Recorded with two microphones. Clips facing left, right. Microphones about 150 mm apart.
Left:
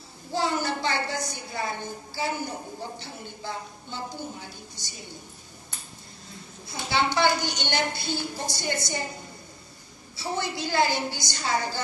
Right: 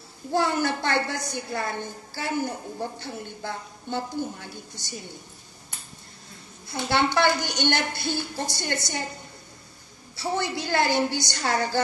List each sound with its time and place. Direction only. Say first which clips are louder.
0.3 s a woman's voice: right 3 dB; 60° right (ahead or behind)
6.7 s a woman's voice: right 3 dB; 55° right (ahead or behind)
10.1 s a woman's voice: right 3 dB; 60° right (ahead or behind)